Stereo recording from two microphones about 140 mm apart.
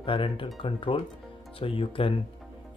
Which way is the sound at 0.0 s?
40° left (ahead or behind).